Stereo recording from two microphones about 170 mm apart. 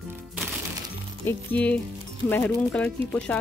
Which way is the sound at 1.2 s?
10° left (ahead or behind).